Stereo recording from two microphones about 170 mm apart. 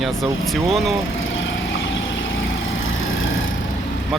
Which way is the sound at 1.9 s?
90° left.